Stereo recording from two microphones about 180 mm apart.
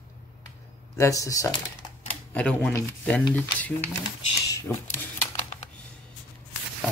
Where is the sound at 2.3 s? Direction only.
5° left (ahead or behind).